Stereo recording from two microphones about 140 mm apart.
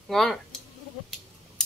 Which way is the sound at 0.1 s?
Centre (ahead or behind).